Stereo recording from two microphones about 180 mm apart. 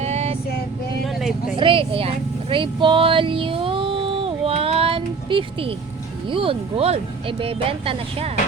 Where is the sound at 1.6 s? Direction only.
30° right (ahead or behind).